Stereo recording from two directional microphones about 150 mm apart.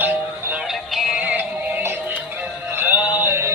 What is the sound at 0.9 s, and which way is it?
Synthetic singing, 10° right (ahead or behind).